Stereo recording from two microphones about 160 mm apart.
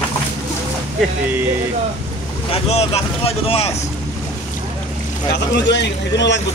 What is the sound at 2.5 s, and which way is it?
Speech, 40° left (ahead or behind).